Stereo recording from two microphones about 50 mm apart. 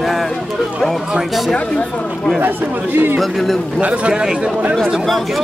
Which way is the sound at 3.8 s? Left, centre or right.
Right.